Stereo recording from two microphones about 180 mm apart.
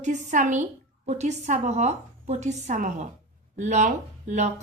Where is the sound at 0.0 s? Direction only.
45° right (ahead or behind).